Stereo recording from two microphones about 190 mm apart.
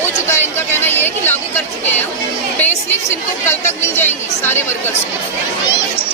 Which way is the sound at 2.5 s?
10° left (ahead or behind).